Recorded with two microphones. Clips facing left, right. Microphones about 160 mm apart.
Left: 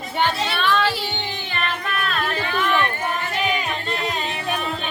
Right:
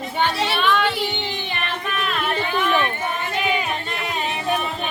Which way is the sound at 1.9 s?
20° right (ahead or behind).